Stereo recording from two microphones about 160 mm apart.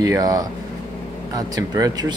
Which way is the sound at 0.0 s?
20° right (ahead or behind).